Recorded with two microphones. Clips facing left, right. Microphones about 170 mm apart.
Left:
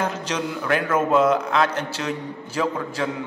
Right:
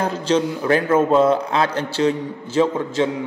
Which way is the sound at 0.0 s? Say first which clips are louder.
Right 6 dB; 30° right (ahead or behind).